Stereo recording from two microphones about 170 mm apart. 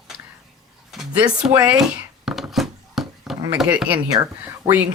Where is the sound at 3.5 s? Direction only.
5° right (ahead or behind).